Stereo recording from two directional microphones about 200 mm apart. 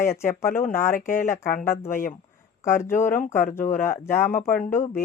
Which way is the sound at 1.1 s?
40° left (ahead or behind).